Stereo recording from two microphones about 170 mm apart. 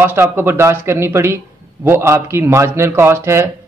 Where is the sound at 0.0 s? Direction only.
15° right (ahead or behind).